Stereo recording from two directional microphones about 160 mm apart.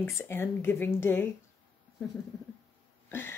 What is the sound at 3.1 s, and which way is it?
Cough, 15° left (ahead or behind).